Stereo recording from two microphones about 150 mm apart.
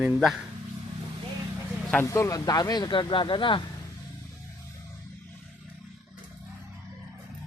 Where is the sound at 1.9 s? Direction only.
15° left (ahead or behind); by 3.6 s 35° left (ahead or behind).